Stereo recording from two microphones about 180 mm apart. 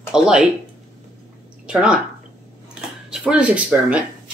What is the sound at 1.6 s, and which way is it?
Speech, 5° right (ahead or behind).